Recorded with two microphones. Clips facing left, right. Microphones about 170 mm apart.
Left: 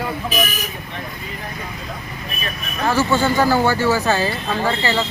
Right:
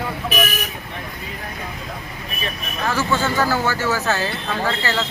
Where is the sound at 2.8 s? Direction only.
10° left (ahead or behind).